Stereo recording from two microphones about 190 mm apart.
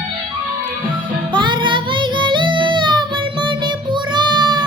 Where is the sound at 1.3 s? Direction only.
25° right (ahead or behind).